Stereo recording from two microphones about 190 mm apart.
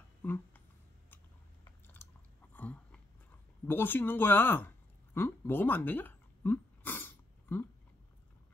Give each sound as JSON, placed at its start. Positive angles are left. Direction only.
{"t": 0.2, "sound": "speech", "side_deg": 10}
{"t": 1.1, "sound": "biting", "side_deg": 15}
{"t": 3.6, "sound": "a sound", "side_deg": 10}